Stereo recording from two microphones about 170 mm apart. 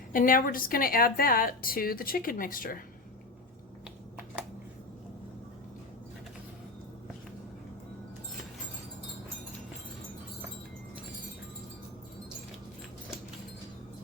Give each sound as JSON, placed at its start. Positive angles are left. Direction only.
{"t": 0.1, "sound": "speech", "side_deg": 55}